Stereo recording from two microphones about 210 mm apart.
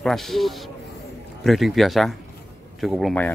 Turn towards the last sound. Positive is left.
turn(degrees=5)  # may be behind; listen again after turning